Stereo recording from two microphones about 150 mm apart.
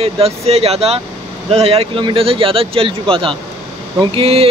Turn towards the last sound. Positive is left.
turn(degrees=-40)  # may be behind; listen again after turning